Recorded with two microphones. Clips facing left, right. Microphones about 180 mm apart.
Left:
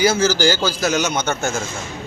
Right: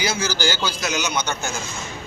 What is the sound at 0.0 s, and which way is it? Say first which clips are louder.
Speech: left 8 dB; 45° left (ahead or behind).